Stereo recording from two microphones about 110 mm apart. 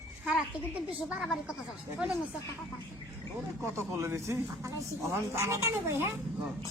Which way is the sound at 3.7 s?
25° right (ahead or behind).